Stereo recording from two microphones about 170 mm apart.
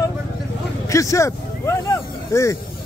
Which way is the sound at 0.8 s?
20° left (ahead or behind).